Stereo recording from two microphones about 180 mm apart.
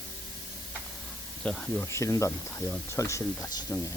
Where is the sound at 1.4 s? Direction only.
5° left (ahead or behind).